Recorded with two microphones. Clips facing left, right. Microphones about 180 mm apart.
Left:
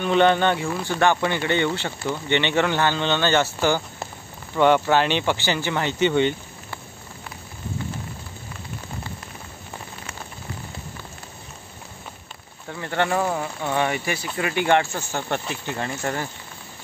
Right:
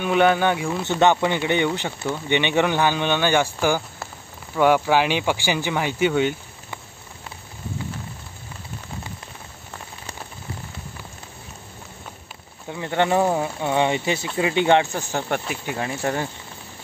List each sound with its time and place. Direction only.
0.0 s speech: 5° right (ahead or behind)
4.6 s speech: 5° right (ahead or behind)
12.6 s speech: 15° right (ahead or behind)